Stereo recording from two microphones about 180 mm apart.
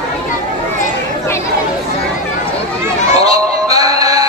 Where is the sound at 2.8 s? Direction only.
20° right (ahead or behind).